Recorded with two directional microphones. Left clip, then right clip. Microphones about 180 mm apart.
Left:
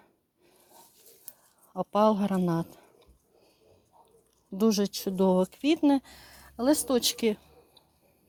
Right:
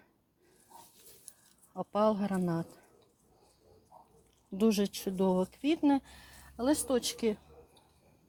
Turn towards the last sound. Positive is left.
turn(degrees=45)  # may be behind; listen again after turning